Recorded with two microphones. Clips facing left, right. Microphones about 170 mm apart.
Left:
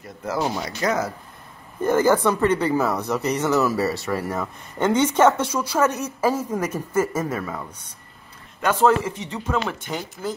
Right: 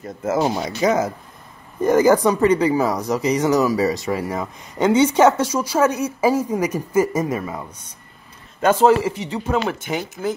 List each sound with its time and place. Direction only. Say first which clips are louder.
0.2 s speech: right 5 dB; 20° right (ahead or behind)
8.7 s speech: right 1 dB; 10° right (ahead or behind)